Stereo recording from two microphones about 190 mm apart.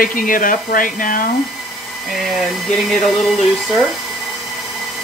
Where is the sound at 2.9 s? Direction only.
Centre (ahead or behind).